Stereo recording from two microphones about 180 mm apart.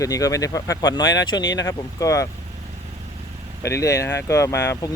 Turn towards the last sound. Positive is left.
turn(degrees=15)  # may be behind; listen again after turning